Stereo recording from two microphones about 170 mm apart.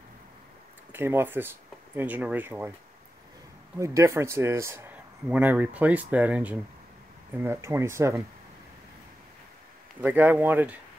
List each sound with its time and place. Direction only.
0.9 s speech: 15° right (ahead or behind)
3.8 s speech: 15° right (ahead or behind)
10.0 s speech: 10° right (ahead or behind)